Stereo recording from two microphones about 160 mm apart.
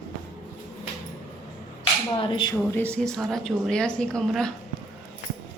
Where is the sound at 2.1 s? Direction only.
30° left (ahead or behind).